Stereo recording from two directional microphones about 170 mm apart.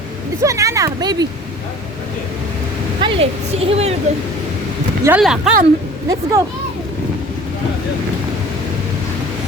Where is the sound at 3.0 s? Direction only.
30° right (ahead or behind).